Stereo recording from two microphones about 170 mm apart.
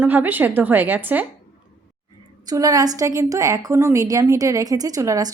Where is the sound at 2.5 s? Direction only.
20° right (ahead or behind).